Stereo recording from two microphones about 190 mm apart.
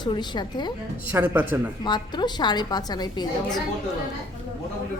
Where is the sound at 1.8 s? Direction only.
25° left (ahead or behind).